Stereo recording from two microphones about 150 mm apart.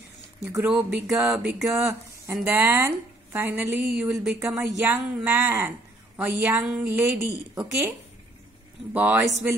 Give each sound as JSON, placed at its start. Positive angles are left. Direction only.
{"t": 0.5, "sound": "speech", "side_deg": -15}
{"t": 1.2, "sound": "music", "side_deg": -5}
{"t": 1.7, "sound": "speech", "side_deg": -15}
{"t": 8.9, "sound": "speech", "side_deg": -10}